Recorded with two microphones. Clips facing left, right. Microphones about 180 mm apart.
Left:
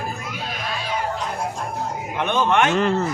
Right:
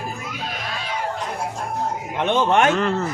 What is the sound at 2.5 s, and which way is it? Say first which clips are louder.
Speech: right 1 dB; 40° right (ahead or behind).